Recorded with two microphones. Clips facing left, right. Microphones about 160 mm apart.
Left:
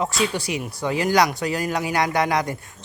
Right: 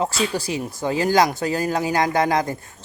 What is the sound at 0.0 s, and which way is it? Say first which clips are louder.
Speech: right 1 dB; 30° right (ahead or behind).